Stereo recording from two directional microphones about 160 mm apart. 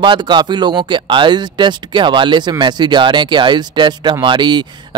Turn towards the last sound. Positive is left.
turn(degrees=-30)  # may be behind; listen again after turning